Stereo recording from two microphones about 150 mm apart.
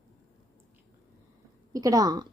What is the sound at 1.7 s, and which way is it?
Speech, 25° right (ahead or behind).